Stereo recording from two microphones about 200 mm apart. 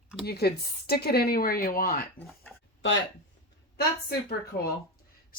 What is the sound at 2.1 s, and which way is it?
Speech, 5° left (ahead or behind).